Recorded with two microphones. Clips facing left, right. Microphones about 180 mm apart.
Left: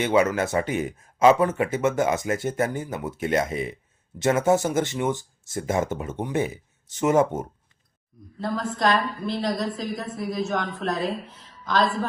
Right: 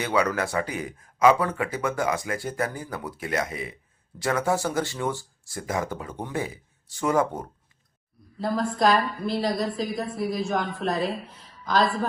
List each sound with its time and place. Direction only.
0.0 s speech: 20° left (ahead or behind)
8.4 s a woman's voice: centre (ahead or behind)